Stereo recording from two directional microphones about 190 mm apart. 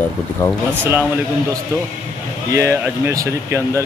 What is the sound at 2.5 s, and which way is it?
Speech, 15° right (ahead or behind).